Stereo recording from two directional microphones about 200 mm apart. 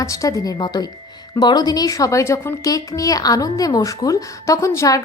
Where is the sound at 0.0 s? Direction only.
15° left (ahead or behind).